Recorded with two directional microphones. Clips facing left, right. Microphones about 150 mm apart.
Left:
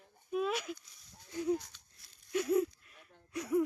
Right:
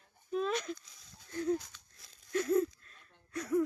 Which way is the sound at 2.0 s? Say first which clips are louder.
Right 5 dB; 90° right.